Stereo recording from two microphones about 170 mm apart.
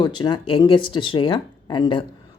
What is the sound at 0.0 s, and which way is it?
Speech, 25° left (ahead or behind).